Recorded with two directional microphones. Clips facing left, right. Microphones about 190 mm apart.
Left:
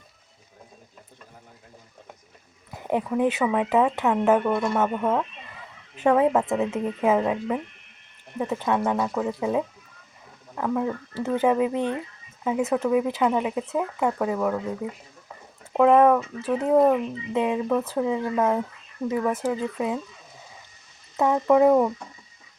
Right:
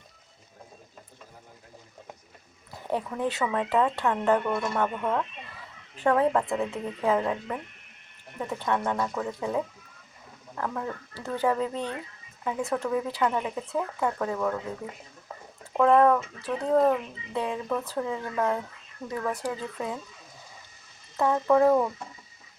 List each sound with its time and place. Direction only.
2.7 s a woman's voice: 15° left (ahead or behind)
21.2 s speech: 15° left (ahead or behind)